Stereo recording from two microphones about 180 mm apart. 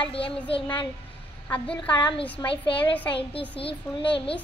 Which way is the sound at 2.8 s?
10° left (ahead or behind).